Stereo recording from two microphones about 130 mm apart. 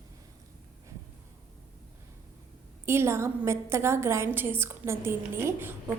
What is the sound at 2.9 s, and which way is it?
A woman's voice, 20° right (ahead or behind).